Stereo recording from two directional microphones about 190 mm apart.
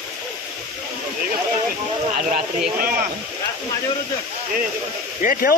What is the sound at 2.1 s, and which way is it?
Speech, 45° right (ahead or behind).